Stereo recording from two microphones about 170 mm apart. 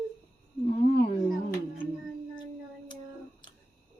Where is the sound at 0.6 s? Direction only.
35° left (ahead or behind).